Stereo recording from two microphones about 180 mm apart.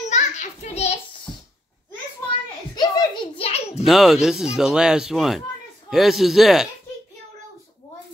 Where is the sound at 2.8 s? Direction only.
25° left (ahead or behind).